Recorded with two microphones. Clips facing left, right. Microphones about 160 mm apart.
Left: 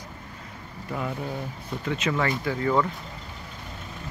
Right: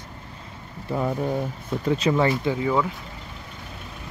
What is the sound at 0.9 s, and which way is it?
Speech, 35° right (ahead or behind).